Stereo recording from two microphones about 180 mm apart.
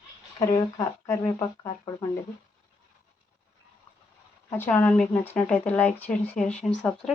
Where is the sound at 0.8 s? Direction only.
20° left (ahead or behind).